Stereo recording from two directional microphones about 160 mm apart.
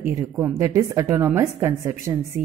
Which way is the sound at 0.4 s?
20° right (ahead or behind).